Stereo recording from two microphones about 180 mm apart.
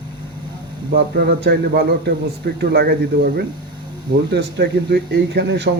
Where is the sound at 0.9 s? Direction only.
60° right (ahead or behind).